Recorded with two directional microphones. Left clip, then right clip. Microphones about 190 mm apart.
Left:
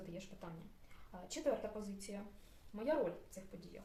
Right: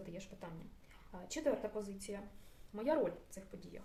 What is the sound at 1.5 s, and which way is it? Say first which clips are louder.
Speech: right 2 dB; 45° right (ahead or behind).